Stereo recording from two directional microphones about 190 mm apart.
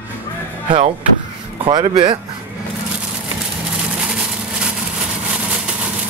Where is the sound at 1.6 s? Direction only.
25° right (ahead or behind).